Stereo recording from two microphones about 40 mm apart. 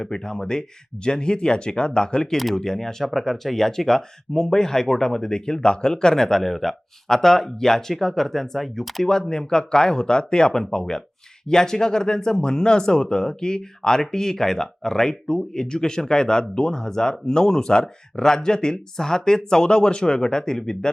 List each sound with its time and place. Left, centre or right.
0.0 s speech: centre
9.3 s speech: centre